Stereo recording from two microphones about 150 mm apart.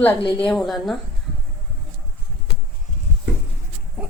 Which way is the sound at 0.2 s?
35° left (ahead or behind).